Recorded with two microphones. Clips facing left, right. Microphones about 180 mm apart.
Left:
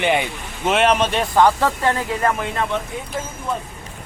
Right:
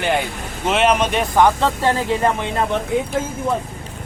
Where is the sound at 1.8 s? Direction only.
30° right (ahead or behind).